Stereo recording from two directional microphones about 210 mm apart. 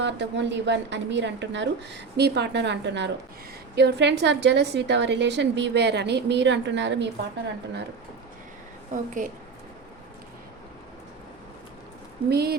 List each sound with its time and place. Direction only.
0.0 s a woman's voice: 55° right (ahead or behind)
8.9 s a woman's voice: 40° right (ahead or behind)
12.3 s speech: 50° right (ahead or behind)